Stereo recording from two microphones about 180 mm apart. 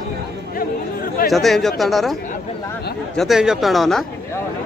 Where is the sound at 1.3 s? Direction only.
Centre (ahead or behind).